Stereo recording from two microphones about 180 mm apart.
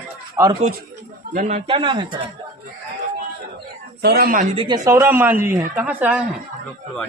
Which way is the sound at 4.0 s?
60° right (ahead or behind).